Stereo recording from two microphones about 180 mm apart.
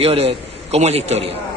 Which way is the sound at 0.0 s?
35° right (ahead or behind).